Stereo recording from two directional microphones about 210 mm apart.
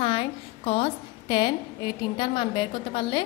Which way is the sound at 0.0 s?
25° left (ahead or behind).